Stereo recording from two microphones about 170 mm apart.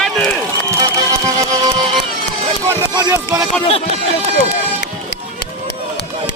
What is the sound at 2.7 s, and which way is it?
Music, 20° right (ahead or behind).